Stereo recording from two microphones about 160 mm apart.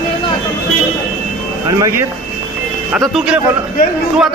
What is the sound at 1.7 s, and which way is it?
Speech, 20° right (ahead or behind).